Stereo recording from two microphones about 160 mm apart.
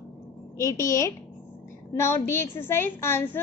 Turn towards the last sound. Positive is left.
turn(degrees=15)  # may be behind; listen again after turning